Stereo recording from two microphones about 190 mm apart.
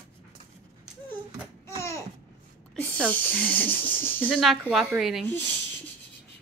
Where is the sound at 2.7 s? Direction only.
5° left (ahead or behind).